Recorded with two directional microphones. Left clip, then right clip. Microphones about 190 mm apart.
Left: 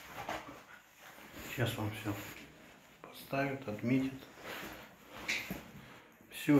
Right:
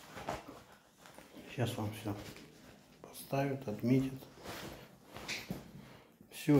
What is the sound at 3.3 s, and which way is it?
Speech, 20° right (ahead or behind).